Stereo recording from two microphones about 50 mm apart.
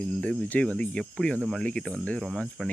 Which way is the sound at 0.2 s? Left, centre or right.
Left.